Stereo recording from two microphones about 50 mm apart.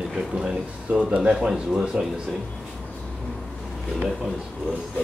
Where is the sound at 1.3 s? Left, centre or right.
Centre.